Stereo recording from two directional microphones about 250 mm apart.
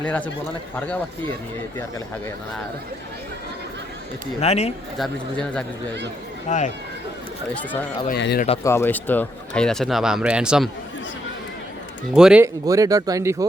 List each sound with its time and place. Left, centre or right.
0.0 s speech: centre
4.4 s speech: left
4.9 s speech: centre
6.5 s speech: left
8.2 s speech: left
8.6 s speech: centre
12.1 s speech: centre